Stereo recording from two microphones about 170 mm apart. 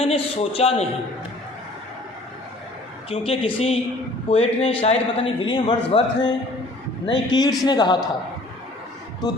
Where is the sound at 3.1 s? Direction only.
35° left (ahead or behind).